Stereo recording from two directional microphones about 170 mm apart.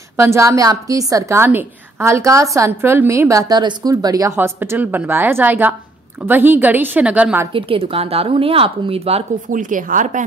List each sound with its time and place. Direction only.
0.2 s a woman's voice: 15° right (ahead or behind)
7.5 s speech: 30° right (ahead or behind)
9.5 s a woman's voice: 50° right (ahead or behind)